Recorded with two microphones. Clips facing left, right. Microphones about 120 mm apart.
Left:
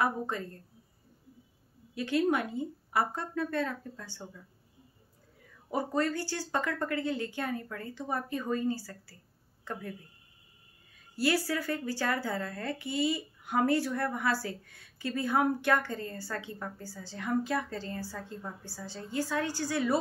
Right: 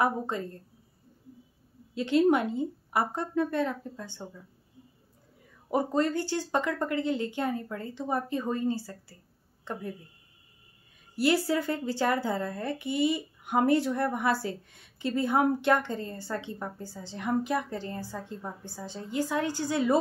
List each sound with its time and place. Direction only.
0.0 s a woman's voice: 20° right (ahead or behind)
2.0 s a woman's voice: 20° right (ahead or behind)
5.7 s a woman's voice: 20° right (ahead or behind)
11.1 s a woman's voice: 20° right (ahead or behind)